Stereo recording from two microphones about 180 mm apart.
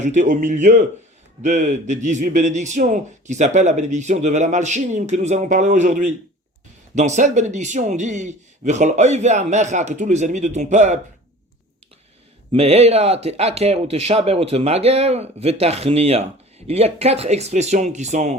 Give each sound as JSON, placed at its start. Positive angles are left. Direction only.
{"t": 0.0, "sound": "a man's voice", "side_deg": -45}
{"t": 12.5, "sound": "a man's voice", "side_deg": -35}